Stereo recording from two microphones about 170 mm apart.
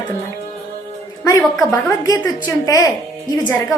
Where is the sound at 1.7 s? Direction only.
20° left (ahead or behind).